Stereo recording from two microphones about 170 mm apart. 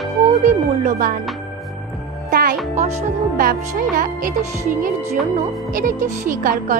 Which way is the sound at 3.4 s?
60° right (ahead or behind).